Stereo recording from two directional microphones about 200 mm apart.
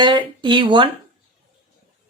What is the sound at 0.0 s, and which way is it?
Speech, 20° right (ahead or behind).